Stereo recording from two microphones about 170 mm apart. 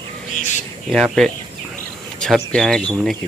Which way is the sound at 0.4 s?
45° left (ahead or behind).